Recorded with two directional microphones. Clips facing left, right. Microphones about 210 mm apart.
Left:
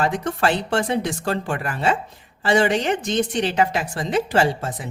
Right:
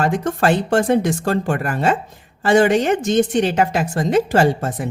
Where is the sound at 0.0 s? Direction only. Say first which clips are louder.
Right 3 dB; 45° right (ahead or behind).